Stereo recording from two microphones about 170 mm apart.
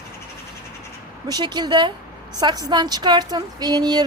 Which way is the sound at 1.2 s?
25° right (ahead or behind).